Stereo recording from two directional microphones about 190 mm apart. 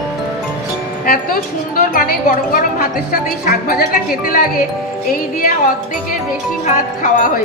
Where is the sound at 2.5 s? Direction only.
50° left (ahead or behind).